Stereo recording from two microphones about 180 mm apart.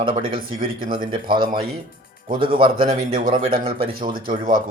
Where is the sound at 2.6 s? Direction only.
30° right (ahead or behind).